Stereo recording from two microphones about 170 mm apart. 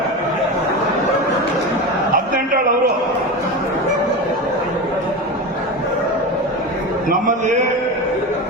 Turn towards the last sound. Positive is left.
turn(degrees=-50)  # may be behind; listen again after turning